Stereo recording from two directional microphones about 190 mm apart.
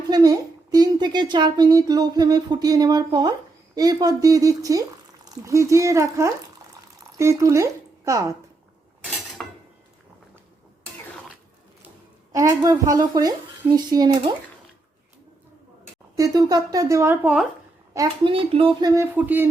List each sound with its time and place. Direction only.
0.1 s a child's voice: 20° right (ahead or behind)
9.4 s dishes: 5° left (ahead or behind)
12.3 s a child's voice: 15° right (ahead or behind)
16.1 s speech: 20° right (ahead or behind)
17.9 s a child's voice: 25° right (ahead or behind)
19.1 s speech: 10° right (ahead or behind)